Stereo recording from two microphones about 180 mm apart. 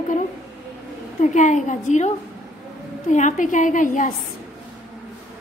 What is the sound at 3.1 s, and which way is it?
A woman's voice, 45° left (ahead or behind).